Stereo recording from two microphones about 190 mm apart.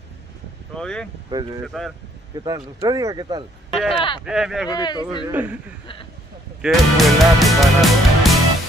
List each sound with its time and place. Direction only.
0.7 s speech: 5° left (ahead or behind)
1.3 s speech: 20° right (ahead or behind)
1.7 s speech: centre (ahead or behind)
2.3 s speech: 20° right (ahead or behind)
3.9 s speech: 25° left (ahead or behind)
4.2 s speech: 5° right (ahead or behind)
4.6 s speech: 20° left (ahead or behind)
5.3 s speech: 5° right (ahead or behind)
6.6 s music: centre (ahead or behind)